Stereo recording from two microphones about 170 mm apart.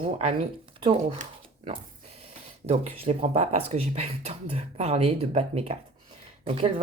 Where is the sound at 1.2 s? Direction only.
35° right (ahead or behind).